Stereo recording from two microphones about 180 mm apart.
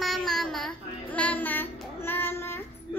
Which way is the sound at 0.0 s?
Centre (ahead or behind).